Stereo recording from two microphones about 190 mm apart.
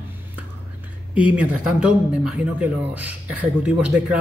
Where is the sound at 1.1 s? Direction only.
5° right (ahead or behind).